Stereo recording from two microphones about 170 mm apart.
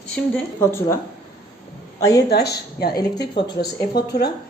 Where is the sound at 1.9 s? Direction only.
20° left (ahead or behind).